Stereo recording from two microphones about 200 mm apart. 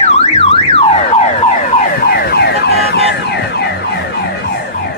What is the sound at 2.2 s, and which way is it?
Car alarm, 55° left (ahead or behind).